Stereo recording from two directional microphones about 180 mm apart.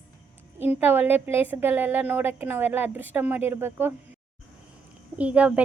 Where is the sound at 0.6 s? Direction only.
10° right (ahead or behind).